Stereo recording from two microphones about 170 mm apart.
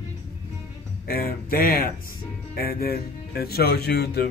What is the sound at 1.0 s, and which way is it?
Speech, 65° left (ahead or behind).